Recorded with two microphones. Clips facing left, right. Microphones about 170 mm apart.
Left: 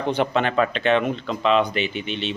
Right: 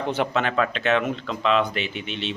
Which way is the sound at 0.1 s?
5° right (ahead or behind).